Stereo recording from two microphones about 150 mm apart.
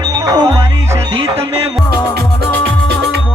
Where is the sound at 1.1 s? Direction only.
40° right (ahead or behind).